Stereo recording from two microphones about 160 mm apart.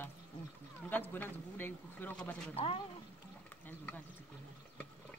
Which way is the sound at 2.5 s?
35° left (ahead or behind).